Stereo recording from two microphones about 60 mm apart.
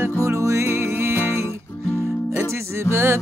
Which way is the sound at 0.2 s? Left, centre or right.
Right.